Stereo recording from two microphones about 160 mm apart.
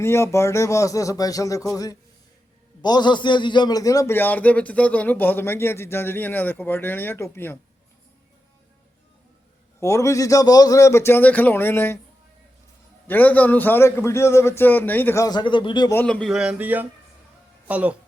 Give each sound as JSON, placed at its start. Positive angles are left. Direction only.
{"t": 0.0, "sound": "a man's voice", "side_deg": 15}
{"t": 9.8, "sound": "a man's voice", "side_deg": 20}
{"t": 13.1, "sound": "a man's voice", "side_deg": 10}
{"t": 16.0, "sound": "speech", "side_deg": 5}